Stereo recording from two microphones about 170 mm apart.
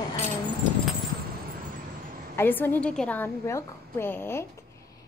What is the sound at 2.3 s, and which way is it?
A woman's voice, 10° left (ahead or behind).